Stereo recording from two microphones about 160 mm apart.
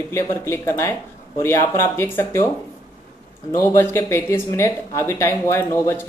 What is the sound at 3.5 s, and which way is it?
Speech, 15° left (ahead or behind).